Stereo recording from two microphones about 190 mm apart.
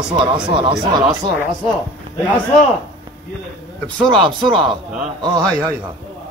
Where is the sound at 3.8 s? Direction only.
5° left (ahead or behind).